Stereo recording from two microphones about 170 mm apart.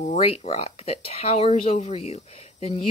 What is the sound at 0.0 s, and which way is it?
Speech, 40° left (ahead or behind).